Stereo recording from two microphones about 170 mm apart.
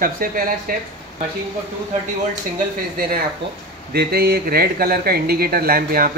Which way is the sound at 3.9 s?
65° right (ahead or behind).